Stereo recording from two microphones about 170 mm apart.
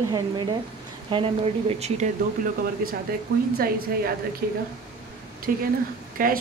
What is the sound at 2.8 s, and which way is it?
Speech, 60° right (ahead or behind).